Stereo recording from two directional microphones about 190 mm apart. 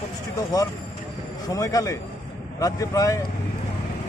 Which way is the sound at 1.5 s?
20° left (ahead or behind).